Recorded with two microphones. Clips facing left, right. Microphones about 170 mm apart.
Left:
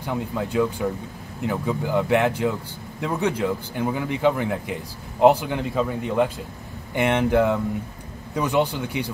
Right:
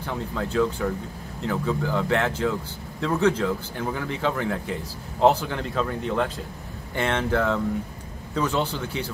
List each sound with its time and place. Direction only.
0.0 s a man's voice: 10° left (ahead or behind)